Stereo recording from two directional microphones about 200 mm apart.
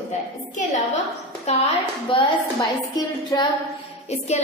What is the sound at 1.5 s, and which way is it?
Speech, 35° left (ahead or behind).